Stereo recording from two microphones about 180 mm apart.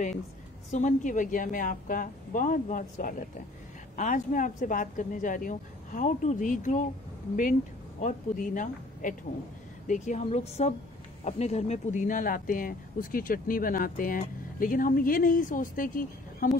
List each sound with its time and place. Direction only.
0.7 s speech: 45° left (ahead or behind)
8.0 s a woman's voice: 45° left (ahead or behind)